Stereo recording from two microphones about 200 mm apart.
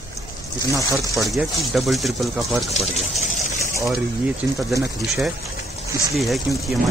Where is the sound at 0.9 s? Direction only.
15° right (ahead or behind).